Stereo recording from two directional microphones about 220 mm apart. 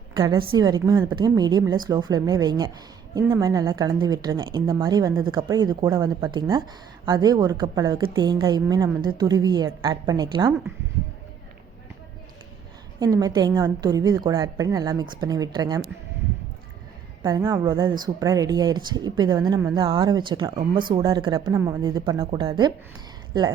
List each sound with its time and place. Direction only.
0.2 s speech: 20° right (ahead or behind)
13.0 s speech: 15° right (ahead or behind)
17.2 s speech: 15° right (ahead or behind)